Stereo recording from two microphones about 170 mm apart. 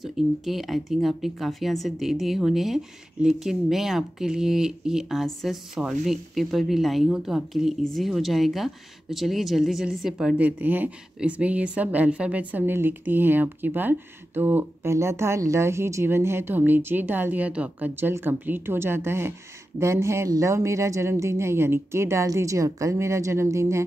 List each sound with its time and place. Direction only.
0.0 s speech: centre (ahead or behind); by 23.9 s 15° right (ahead or behind)